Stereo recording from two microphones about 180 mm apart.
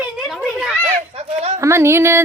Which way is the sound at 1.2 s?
35° right (ahead or behind).